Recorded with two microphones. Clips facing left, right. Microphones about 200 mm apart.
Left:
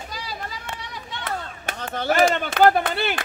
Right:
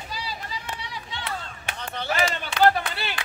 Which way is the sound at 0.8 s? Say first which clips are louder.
Left 1 dB; 50° left (ahead or behind).